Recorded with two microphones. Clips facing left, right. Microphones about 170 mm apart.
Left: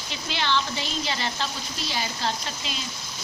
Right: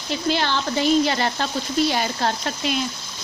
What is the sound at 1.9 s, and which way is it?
Frying, 55° right (ahead or behind).